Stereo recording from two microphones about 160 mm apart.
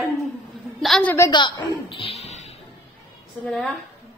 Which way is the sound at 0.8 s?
5° left (ahead or behind).